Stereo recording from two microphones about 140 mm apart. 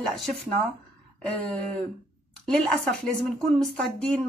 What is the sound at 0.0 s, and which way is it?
Speech, centre (ahead or behind).